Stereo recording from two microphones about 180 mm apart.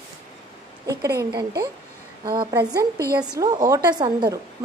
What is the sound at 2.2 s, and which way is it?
A woman's voice, 25° right (ahead or behind).